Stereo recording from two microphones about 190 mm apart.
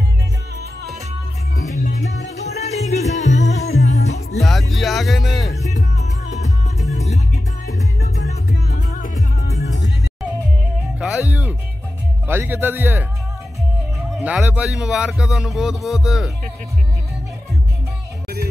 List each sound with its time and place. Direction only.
1.8 s music: 40° left (ahead or behind)
4.4 s music: centre (ahead or behind)
5.6 s music: 35° left (ahead or behind)
8.6 s music: 40° left (ahead or behind)
11.0 s music: 5° right (ahead or behind)
12.3 s speech: 10° right (ahead or behind)